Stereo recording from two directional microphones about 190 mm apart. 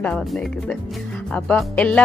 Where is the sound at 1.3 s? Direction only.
5° left (ahead or behind).